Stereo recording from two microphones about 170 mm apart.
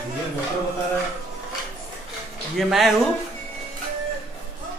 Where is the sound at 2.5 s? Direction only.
Centre (ahead or behind).